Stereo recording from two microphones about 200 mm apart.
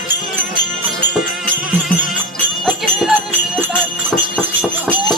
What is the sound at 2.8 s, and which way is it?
Jingle bell, centre (ahead or behind).